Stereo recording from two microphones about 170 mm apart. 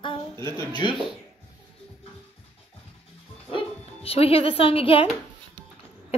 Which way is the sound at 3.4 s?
35° left (ahead or behind).